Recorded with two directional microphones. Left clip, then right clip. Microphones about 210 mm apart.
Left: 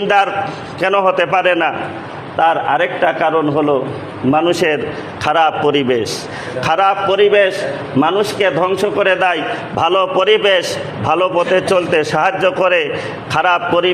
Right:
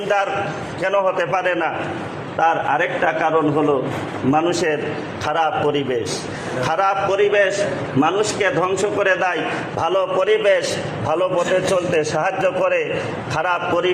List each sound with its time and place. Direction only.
0.8 s a man's voice: 50° left (ahead or behind)